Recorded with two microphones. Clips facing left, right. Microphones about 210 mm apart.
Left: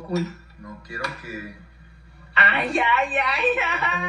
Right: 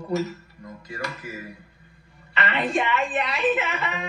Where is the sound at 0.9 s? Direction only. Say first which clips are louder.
Even; 15° right (ahead or behind).